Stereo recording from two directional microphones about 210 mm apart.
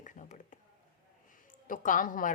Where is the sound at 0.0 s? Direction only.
35° left (ahead or behind).